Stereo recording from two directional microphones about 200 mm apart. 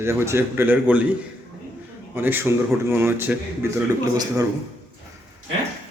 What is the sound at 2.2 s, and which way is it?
Speech, 10° right (ahead or behind).